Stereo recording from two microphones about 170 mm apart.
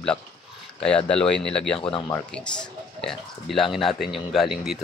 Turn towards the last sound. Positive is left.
turn(degrees=0)  # may be behind; listen again after turning